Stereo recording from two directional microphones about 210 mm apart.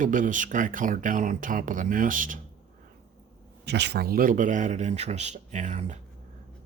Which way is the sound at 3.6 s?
55° right (ahead or behind).